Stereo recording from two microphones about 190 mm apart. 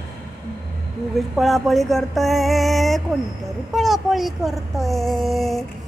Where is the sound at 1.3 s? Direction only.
Centre (ahead or behind).